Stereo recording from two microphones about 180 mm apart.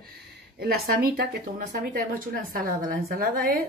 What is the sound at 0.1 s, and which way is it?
Speech, 60° right (ahead or behind).